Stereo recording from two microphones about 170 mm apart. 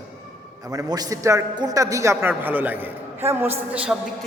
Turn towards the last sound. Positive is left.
turn(degrees=-5)  # may be behind; listen again after turning